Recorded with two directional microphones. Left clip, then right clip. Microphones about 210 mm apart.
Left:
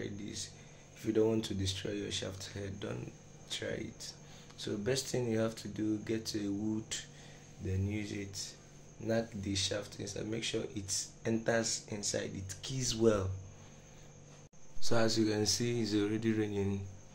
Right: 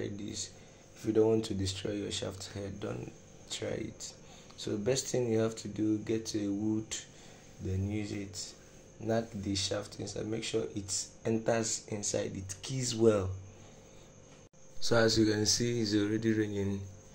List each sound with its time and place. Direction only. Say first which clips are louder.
0.0 s a sound: right 3 dB; 5° right (ahead or behind)
1.0 s speech: right 4 dB; centre (ahead or behind)
14.8 s speech: right 5 dB; 10° right (ahead or behind)